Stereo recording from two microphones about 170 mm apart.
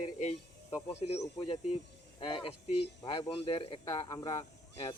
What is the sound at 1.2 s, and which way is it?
Speech, 30° left (ahead or behind).